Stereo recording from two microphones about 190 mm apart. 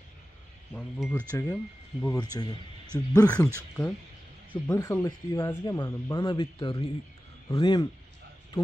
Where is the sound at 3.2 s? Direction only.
5° left (ahead or behind).